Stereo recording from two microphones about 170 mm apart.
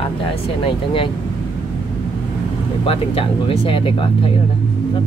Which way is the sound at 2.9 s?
35° left (ahead or behind).